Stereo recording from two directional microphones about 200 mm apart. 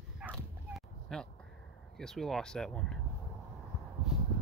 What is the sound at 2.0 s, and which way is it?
Speech, centre (ahead or behind).